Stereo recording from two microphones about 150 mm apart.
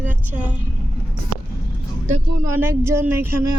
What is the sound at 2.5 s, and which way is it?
Speech, 15° right (ahead or behind).